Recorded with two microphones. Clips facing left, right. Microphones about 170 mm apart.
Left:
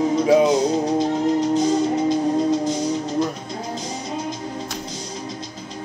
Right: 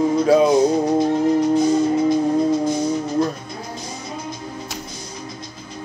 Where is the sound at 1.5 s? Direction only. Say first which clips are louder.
Right 2 dB; 20° left (ahead or behind).